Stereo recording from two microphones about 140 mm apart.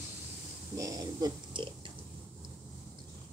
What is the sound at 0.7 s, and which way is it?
Speech, 25° right (ahead or behind).